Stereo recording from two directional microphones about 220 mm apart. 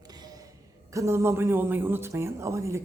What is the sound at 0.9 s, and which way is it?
Speech, 15° right (ahead or behind).